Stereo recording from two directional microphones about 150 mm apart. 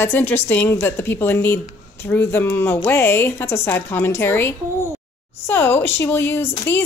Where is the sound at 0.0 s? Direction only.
15° left (ahead or behind).